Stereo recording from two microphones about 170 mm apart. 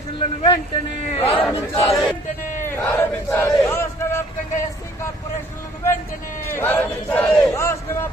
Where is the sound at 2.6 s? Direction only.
15° left (ahead or behind).